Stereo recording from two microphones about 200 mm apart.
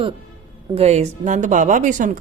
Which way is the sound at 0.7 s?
30° right (ahead or behind).